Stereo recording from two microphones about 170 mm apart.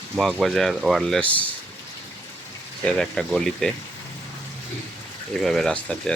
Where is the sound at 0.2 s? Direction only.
Centre (ahead or behind).